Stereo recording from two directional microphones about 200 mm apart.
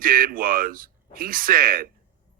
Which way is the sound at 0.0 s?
45° right (ahead or behind).